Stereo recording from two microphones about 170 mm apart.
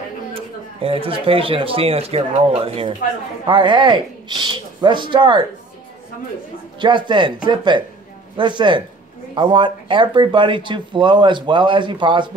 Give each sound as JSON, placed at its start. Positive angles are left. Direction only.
{"t": 0.3, "sound": "speech", "side_deg": -35}
{"t": 6.8, "sound": "speech", "side_deg": -25}